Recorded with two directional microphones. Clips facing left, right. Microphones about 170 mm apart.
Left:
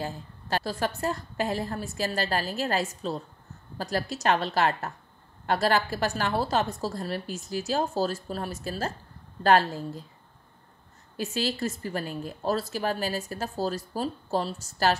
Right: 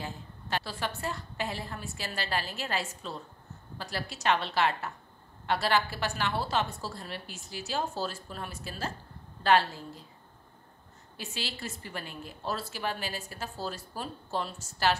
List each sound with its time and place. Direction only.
0.0 s a woman's voice: 40° left (ahead or behind)
11.1 s a woman's voice: 45° left (ahead or behind)